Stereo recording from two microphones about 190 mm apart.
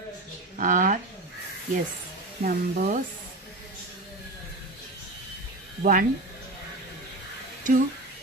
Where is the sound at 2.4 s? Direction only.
45° right (ahead or behind).